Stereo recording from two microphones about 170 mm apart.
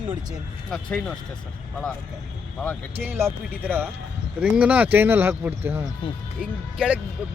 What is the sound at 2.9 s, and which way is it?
Speech, 15° right (ahead or behind).